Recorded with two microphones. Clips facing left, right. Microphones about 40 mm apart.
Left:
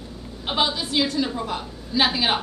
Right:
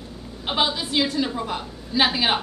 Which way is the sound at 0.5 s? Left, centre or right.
Centre.